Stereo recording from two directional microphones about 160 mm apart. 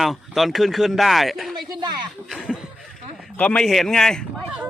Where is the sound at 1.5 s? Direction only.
30° right (ahead or behind).